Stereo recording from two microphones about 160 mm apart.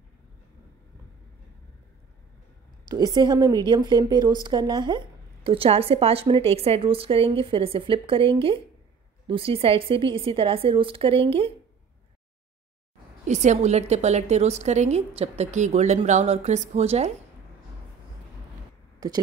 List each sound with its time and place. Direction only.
2.9 s speech: 25° right (ahead or behind)
13.3 s a woman's voice: 45° right (ahead or behind)
19.0 s speech: 20° right (ahead or behind)